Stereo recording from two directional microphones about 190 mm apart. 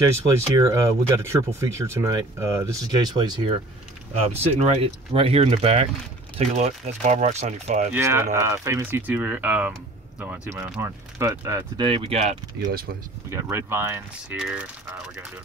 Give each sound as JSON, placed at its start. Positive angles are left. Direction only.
{"t": 0.0, "sound": "speech", "side_deg": -15}
{"t": 4.1, "sound": "speech", "side_deg": -35}
{"t": 7.9, "sound": "speech", "side_deg": -10}
{"t": 13.3, "sound": "speech", "side_deg": -15}